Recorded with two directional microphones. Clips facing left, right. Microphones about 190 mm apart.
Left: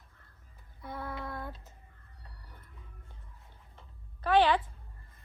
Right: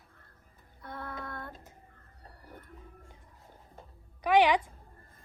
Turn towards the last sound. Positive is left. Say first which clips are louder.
# right 1 dB
turn(degrees=-10)  # may be behind; listen again after turning